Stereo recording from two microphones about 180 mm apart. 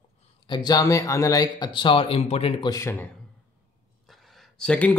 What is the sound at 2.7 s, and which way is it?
Speech, 15° left (ahead or behind).